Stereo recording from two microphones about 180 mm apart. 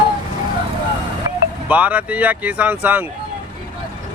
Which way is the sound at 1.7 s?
10° right (ahead or behind).